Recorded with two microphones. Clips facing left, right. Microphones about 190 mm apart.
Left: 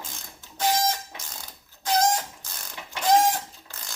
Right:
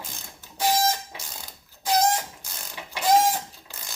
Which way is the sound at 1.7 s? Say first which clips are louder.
Right 1 dB; 10° right (ahead or behind).